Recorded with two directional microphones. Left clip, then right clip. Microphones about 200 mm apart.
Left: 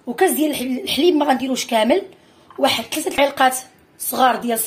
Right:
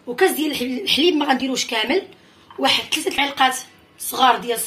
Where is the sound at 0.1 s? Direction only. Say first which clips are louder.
Left 1 dB; 50° left (ahead or behind).